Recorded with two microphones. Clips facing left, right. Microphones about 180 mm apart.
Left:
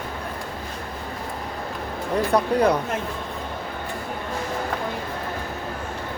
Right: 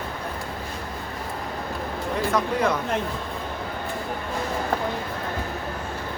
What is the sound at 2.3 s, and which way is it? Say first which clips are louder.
Speech: left 5 dB; 35° left (ahead or behind).